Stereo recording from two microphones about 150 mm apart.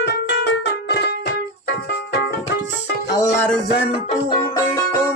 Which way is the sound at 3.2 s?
15° left (ahead or behind).